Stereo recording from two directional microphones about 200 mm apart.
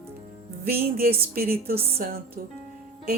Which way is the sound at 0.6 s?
50° right (ahead or behind).